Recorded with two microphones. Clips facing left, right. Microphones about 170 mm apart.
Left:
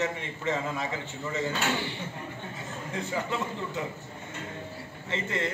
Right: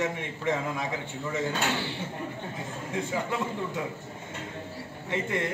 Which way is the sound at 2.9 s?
10° right (ahead or behind).